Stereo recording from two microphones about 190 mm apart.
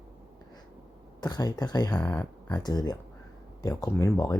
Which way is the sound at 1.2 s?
20° left (ahead or behind).